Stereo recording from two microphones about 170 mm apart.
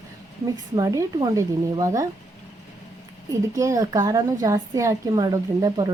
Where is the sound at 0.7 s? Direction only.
25° right (ahead or behind).